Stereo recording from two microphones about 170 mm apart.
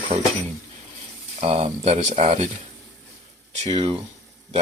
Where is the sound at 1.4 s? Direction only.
35° right (ahead or behind).